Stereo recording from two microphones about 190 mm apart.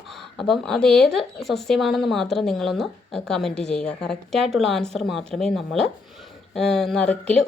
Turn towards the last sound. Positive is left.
turn(degrees=5)  # may be behind; listen again after turning